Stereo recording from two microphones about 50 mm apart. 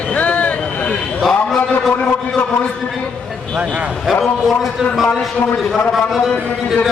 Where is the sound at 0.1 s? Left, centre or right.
Left.